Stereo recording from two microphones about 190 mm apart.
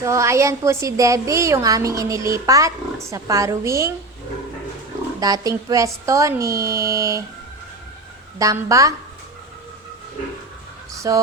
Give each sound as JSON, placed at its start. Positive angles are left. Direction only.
{"t": 0.0, "sound": "a woman's voice", "side_deg": -15}
{"t": 5.2, "sound": "a woman's voice", "side_deg": -20}
{"t": 8.4, "sound": "a woman's voice", "side_deg": -15}
{"t": 11.1, "sound": "a woman's voice", "side_deg": -15}